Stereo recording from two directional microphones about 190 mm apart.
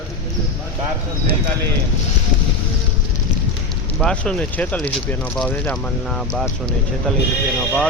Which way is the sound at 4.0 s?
5° left (ahead or behind).